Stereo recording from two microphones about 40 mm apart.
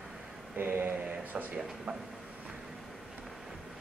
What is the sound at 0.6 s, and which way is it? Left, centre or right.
Mantra, right.